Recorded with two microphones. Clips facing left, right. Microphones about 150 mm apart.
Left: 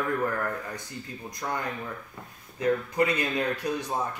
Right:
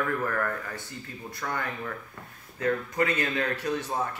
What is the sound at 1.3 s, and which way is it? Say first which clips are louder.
A man's voice: left 1 dB; 15° left (ahead or behind).